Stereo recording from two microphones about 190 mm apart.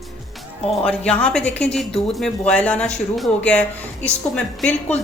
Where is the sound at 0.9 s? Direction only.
5° left (ahead or behind).